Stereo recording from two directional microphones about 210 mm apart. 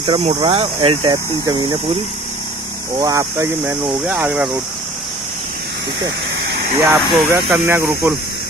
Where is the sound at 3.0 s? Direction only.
15° right (ahead or behind).